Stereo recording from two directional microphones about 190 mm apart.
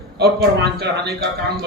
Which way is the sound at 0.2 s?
60° right (ahead or behind).